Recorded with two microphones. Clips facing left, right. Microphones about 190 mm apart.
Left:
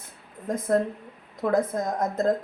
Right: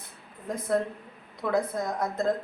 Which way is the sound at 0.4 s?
45° left (ahead or behind).